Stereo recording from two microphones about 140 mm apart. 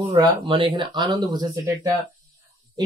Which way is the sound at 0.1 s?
35° right (ahead or behind).